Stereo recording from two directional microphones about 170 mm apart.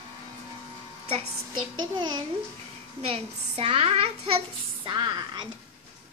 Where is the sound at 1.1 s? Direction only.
30° right (ahead or behind).